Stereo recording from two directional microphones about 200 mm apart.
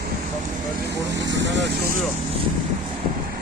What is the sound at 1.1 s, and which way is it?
Vehicle, 65° right (ahead or behind).